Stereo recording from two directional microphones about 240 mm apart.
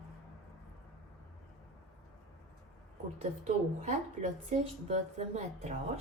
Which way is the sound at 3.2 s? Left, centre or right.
Right.